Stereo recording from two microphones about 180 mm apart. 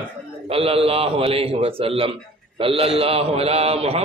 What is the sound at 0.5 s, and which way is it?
A man's voice, 30° right (ahead or behind).